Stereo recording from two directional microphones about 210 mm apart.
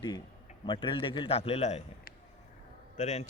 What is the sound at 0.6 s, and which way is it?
A man's voice, 20° left (ahead or behind).